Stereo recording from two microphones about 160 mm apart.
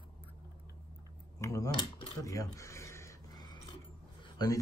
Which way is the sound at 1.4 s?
20° left (ahead or behind).